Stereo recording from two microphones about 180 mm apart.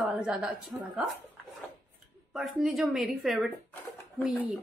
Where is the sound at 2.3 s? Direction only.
Centre (ahead or behind).